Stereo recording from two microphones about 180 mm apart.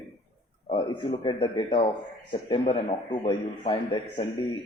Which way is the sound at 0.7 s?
25° left (ahead or behind).